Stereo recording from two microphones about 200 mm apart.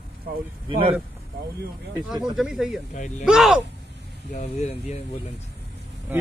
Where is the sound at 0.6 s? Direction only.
30° right (ahead or behind).